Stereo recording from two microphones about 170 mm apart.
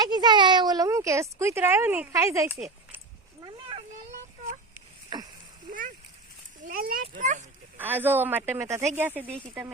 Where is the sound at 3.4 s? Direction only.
30° right (ahead or behind).